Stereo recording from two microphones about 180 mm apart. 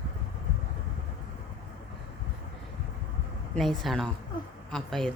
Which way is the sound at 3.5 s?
Centre (ahead or behind).